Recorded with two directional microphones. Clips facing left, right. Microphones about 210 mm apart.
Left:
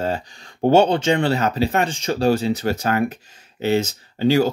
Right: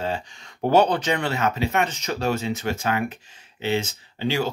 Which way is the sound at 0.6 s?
25° left (ahead or behind).